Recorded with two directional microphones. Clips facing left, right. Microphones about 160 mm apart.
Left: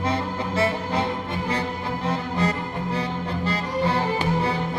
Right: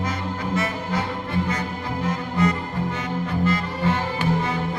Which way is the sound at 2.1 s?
30° left (ahead or behind).